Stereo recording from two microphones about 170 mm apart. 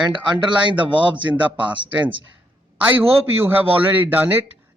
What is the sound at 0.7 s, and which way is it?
Speech, 30° right (ahead or behind).